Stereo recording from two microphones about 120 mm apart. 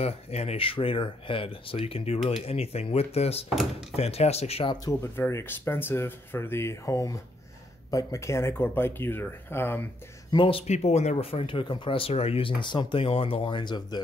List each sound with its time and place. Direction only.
0.0 s speech: 60° left (ahead or behind)
5.1 s speech: 20° left (ahead or behind)
10.3 s speech: 45° left (ahead or behind)
10.7 s speech: 65° left (ahead or behind); by 14.0 s 35° left (ahead or behind)